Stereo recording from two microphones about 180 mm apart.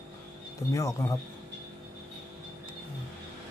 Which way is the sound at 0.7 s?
15° left (ahead or behind).